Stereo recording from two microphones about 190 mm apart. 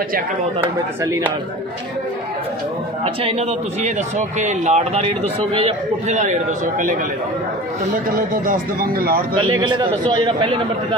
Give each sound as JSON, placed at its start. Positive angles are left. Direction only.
{"t": 1.0, "sound": "speech", "side_deg": -15}
{"t": 3.3, "sound": "a man's voice", "side_deg": -35}
{"t": 8.1, "sound": "speech", "side_deg": -45}
{"t": 9.6, "sound": "a man's voice", "side_deg": -25}